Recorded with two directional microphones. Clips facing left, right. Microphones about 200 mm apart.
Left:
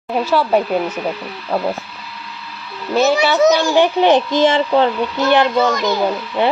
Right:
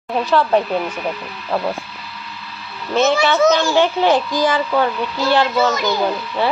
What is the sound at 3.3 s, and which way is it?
A child's voice, 15° left (ahead or behind).